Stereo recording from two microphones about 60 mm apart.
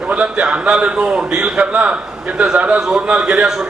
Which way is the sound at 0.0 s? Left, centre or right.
Right.